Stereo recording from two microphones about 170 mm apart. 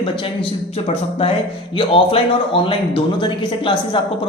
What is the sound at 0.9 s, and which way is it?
A woman's voice, 35° left (ahead or behind).